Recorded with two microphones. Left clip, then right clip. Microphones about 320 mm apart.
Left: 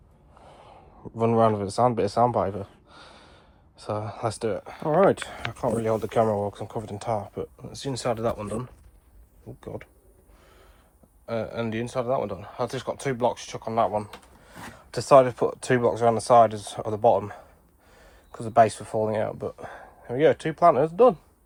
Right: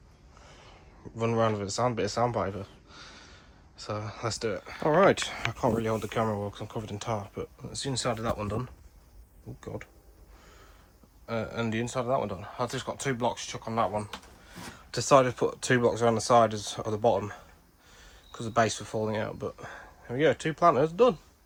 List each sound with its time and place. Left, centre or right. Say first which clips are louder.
0.4 s a sound: left 4 dB; centre
1.1 s speech: left 6 dB; centre
11.3 s speech: left 3 dB; centre